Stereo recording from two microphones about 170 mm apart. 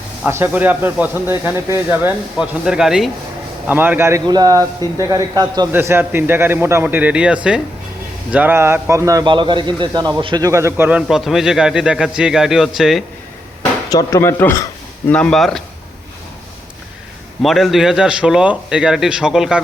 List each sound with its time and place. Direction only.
0.3 s a man's voice: 15° right (ahead or behind)
5.7 s a man's voice: 10° right (ahead or behind)
13.9 s a man's voice: 15° left (ahead or behind)
15.1 s speech: 5° left (ahead or behind)
17.4 s speech: centre (ahead or behind)